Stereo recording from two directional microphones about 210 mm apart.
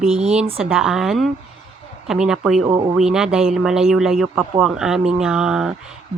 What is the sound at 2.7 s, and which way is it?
Speech, 20° right (ahead or behind).